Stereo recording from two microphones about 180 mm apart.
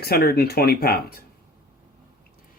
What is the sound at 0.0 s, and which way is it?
Speech, 60° left (ahead or behind).